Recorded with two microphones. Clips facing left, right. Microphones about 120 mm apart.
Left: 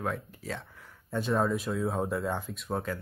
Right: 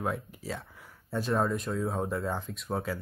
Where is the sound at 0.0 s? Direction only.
10° right (ahead or behind).